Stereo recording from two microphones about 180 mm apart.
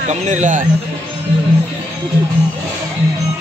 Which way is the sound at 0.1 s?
45° right (ahead or behind).